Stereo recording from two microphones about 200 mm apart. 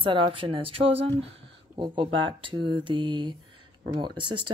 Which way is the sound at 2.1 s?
25° right (ahead or behind).